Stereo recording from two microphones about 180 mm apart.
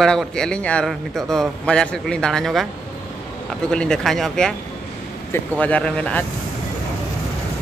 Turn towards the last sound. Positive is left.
turn(degrees=5)  # may be behind; listen again after turning